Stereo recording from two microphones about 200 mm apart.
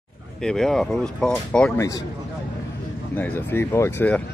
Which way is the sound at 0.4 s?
5° left (ahead or behind).